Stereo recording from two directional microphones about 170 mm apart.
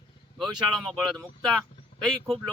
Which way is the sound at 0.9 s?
Centre (ahead or behind).